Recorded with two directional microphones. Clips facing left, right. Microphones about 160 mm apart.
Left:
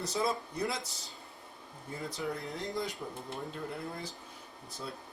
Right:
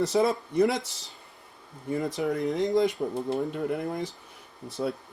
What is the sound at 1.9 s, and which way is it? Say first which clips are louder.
Speech: right 10 dB; 75° right (ahead or behind).